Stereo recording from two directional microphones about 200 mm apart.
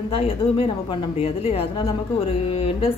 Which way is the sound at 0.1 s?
30° left (ahead or behind).